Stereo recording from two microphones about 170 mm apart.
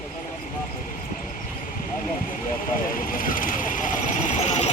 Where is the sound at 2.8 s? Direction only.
55° left (ahead or behind).